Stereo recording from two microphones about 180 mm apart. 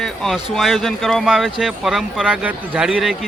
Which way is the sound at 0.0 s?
Centre (ahead or behind).